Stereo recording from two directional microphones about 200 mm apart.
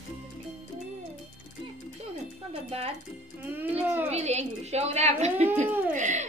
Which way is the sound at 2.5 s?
30° right (ahead or behind).